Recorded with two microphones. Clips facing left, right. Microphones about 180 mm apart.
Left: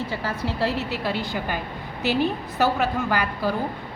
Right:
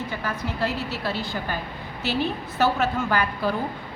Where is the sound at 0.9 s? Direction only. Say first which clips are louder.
Left 2 dB; 15° left (ahead or behind).